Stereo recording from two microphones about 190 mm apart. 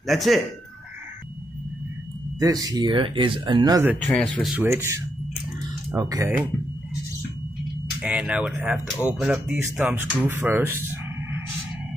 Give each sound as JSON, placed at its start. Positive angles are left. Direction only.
{"t": 0.0, "sound": "speech", "side_deg": 0}
{"t": 2.4, "sound": "speech", "side_deg": -20}
{"t": 3.9, "sound": "speech", "side_deg": 0}
{"t": 4.6, "sound": "speech", "side_deg": -15}
{"t": 8.0, "sound": "speech", "side_deg": -5}